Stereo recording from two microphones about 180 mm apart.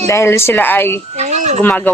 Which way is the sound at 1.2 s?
40° right (ahead or behind).